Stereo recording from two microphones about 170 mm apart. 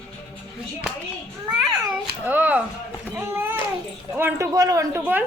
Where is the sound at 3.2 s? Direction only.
15° right (ahead or behind).